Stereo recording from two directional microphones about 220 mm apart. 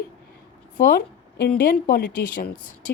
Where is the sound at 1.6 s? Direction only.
45° left (ahead or behind).